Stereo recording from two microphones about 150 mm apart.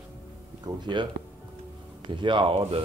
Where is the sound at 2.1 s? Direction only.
35° right (ahead or behind).